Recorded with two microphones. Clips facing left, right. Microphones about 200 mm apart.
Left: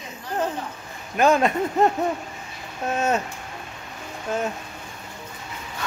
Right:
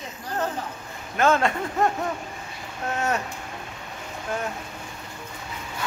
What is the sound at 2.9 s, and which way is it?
Speech, 20° left (ahead or behind).